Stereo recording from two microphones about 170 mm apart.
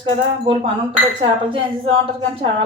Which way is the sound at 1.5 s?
30° right (ahead or behind).